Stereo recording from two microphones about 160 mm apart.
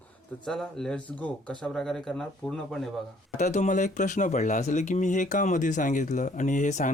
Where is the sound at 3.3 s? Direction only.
45° left (ahead or behind).